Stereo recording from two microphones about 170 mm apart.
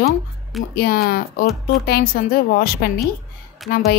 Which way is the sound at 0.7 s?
60° left (ahead or behind).